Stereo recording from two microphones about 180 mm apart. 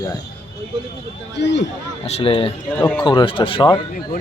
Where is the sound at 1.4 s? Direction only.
75° left (ahead or behind).